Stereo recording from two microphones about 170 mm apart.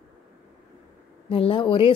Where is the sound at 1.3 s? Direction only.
30° left (ahead or behind).